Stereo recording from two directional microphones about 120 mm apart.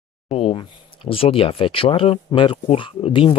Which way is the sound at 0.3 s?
55° left (ahead or behind).